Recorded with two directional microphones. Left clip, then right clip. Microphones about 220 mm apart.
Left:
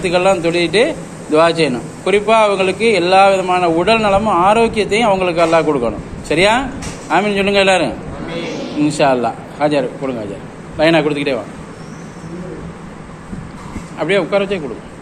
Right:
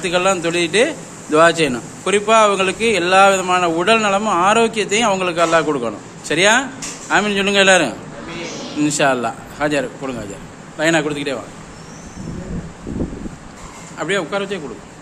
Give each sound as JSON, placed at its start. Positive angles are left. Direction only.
{"t": 0.0, "sound": "a man's voice", "side_deg": -20}
{"t": 13.9, "sound": "speech", "side_deg": -15}